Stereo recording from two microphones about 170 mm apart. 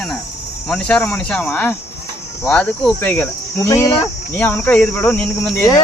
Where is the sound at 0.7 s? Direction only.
5° left (ahead or behind).